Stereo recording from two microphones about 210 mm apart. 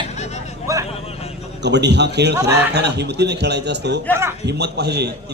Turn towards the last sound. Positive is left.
turn(degrees=-50)  # may be behind; listen again after turning